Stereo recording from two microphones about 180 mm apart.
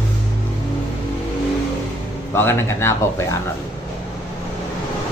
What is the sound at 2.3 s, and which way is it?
Speech, 15° left (ahead or behind).